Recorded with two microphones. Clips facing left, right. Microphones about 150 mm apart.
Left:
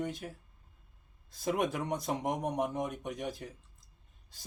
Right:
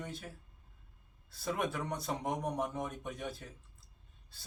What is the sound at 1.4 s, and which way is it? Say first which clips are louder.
Speech: left 4 dB; 15° left (ahead or behind).